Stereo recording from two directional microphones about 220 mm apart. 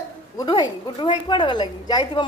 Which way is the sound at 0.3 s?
20° left (ahead or behind).